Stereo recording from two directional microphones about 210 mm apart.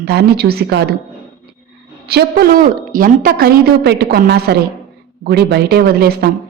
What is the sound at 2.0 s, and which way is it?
A woman's voice, 45° right (ahead or behind).